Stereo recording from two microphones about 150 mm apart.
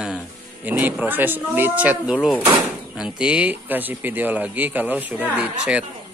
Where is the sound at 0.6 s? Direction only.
10° right (ahead or behind).